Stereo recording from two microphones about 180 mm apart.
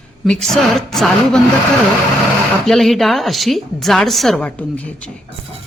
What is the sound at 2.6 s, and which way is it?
A woman's voice, centre (ahead or behind).